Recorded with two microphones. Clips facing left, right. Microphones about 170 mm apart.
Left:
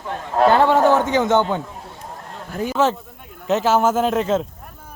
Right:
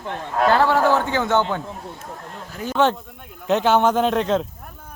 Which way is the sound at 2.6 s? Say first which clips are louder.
Even; 5° left (ahead or behind).